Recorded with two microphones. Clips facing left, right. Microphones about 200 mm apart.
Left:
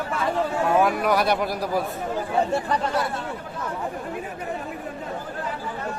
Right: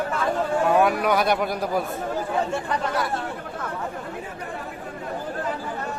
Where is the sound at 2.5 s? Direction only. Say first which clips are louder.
Left 2 dB; 35° left (ahead or behind).